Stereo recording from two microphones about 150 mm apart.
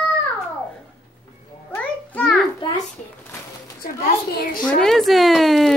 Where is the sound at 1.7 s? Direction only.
10° left (ahead or behind).